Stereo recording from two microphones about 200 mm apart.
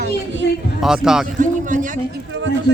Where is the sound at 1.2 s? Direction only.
40° right (ahead or behind).